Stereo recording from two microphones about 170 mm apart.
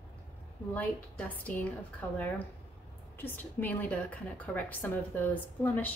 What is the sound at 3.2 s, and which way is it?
A woman's voice, 10° left (ahead or behind).